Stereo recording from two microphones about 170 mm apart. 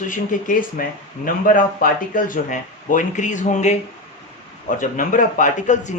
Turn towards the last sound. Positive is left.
turn(degrees=45)  # may be behind; listen again after turning